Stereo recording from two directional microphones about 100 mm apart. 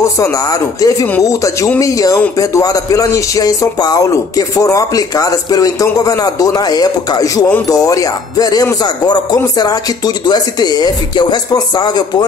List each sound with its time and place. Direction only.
0.0 s speech: 35° left (ahead or behind)